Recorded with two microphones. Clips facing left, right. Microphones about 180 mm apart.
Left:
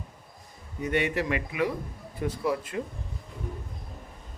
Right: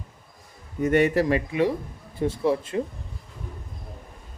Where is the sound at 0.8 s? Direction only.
45° right (ahead or behind); by 2.8 s 25° right (ahead or behind).